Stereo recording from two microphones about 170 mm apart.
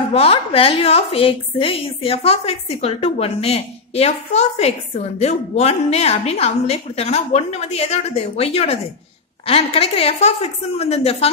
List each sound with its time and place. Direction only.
0.1 s a woman's voice: 35° left (ahead or behind)